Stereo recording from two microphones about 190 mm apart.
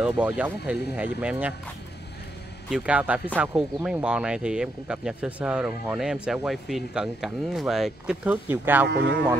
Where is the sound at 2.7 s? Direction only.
5° right (ahead or behind).